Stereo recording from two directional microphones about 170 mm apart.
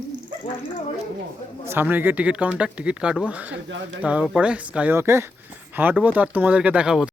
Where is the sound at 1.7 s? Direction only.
10° right (ahead or behind).